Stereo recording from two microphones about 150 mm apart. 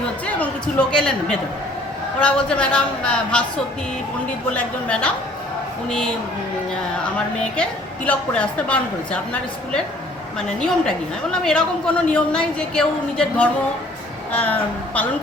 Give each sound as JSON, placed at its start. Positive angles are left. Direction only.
{"t": 0.3, "sound": "a woman's voice", "side_deg": 10}
{"t": 4.5, "sound": "a woman's voice", "side_deg": 5}
{"t": 7.5, "sound": "a woman's voice", "side_deg": 10}